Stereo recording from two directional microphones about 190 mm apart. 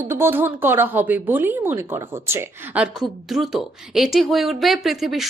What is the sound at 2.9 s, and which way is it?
A woman's voice, centre (ahead or behind).